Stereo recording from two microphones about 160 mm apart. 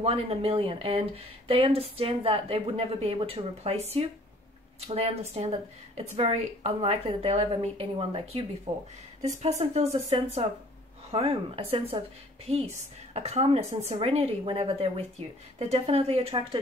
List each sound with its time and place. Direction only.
0.0 s speech: 35° right (ahead or behind)
13.1 s speech: 40° right (ahead or behind)